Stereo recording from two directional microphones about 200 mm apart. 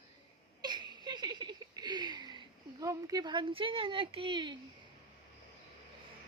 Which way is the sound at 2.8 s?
15° right (ahead or behind).